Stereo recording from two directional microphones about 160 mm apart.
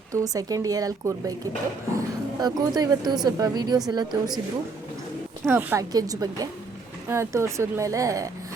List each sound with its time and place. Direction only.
0.1 s speech: 20° right (ahead or behind)
5.5 s speech: 15° right (ahead or behind)